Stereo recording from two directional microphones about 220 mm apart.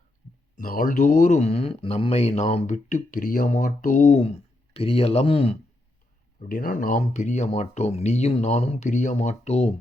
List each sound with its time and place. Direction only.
0.5 s speech: 40° left (ahead or behind)
6.5 s speech: 40° left (ahead or behind)